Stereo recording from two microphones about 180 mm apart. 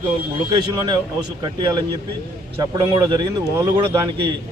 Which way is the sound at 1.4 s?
25° right (ahead or behind).